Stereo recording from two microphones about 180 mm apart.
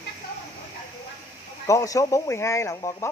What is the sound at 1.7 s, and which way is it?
Speech, 15° left (ahead or behind).